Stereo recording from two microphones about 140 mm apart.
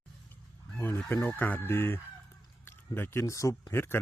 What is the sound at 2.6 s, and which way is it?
Speech, 15° left (ahead or behind).